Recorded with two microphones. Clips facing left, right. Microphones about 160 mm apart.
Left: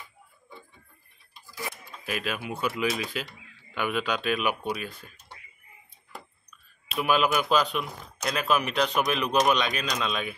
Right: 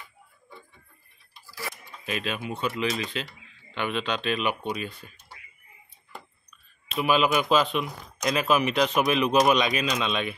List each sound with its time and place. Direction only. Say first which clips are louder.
1.4 s tick-tock: left 1 dB; 20° left (ahead or behind)
2.0 s speech: right 1 dB; 5° left (ahead or behind)
7.0 s speech: right 1 dB; centre (ahead or behind)